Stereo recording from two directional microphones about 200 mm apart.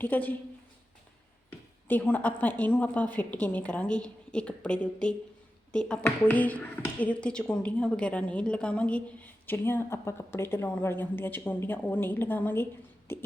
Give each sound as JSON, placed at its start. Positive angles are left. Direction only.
{"t": 0.0, "sound": "speech", "side_deg": 10}
{"t": 1.5, "sound": "speech", "side_deg": 10}